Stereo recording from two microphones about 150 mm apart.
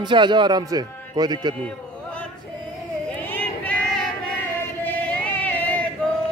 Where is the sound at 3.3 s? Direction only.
10° left (ahead or behind).